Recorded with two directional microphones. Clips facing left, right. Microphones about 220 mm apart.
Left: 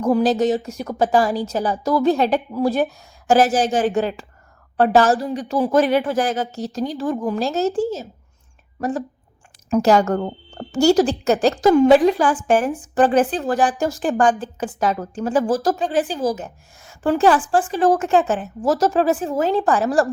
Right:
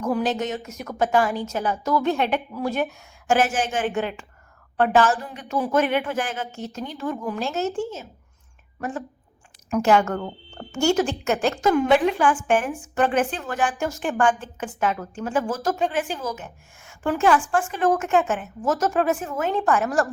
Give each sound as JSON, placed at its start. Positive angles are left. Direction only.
{"t": 0.0, "sound": "speech", "side_deg": 35}